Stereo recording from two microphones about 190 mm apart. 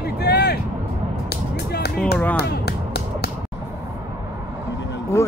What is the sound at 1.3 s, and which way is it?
Music, 60° left (ahead or behind).